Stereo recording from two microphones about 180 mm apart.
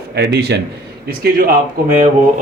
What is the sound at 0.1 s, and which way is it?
Speech, 65° right (ahead or behind).